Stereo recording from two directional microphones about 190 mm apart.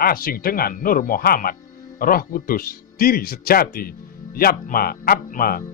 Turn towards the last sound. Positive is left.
turn(degrees=50)  # may be behind; listen again after turning